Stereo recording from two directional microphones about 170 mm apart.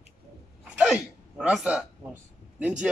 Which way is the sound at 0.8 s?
5° right (ahead or behind).